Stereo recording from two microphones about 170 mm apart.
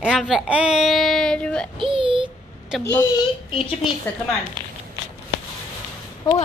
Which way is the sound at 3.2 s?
30° left (ahead or behind).